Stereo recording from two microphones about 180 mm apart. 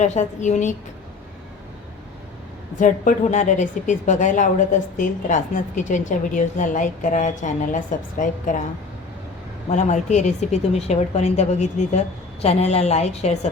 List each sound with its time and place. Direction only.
0.0 s a woman's voice: 40° left (ahead or behind)
2.7 s a woman's voice: 45° left (ahead or behind)
9.6 s a woman's voice: 40° left (ahead or behind)